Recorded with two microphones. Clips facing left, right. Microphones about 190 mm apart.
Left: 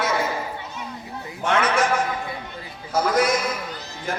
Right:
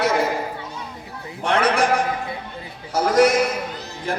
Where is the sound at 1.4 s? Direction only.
35° right (ahead or behind).